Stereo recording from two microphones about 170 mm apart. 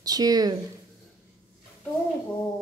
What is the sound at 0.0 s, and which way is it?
Speech, 20° right (ahead or behind).